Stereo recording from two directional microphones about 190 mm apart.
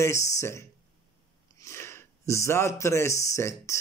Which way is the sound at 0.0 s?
15° left (ahead or behind).